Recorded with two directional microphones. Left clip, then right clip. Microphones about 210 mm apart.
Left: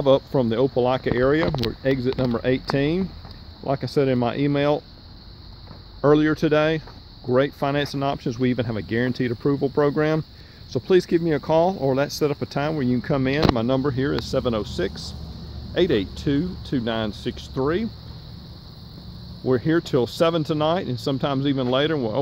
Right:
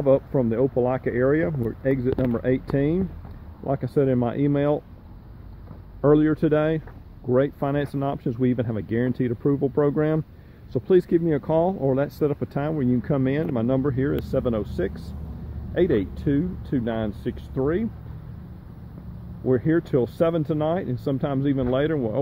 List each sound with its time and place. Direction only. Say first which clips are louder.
0.0 s speech: left 2 dB; 15° left (ahead or behind)
5.9 s speech: left 1 dB; 5° left (ahead or behind)
19.4 s speech: left 1 dB; 5° left (ahead or behind)